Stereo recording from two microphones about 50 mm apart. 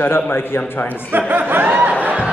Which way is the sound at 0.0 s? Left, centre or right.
Left.